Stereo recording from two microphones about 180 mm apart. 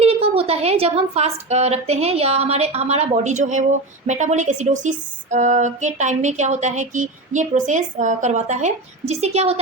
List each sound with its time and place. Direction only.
0.0 s a woman's voice: 35° right (ahead or behind)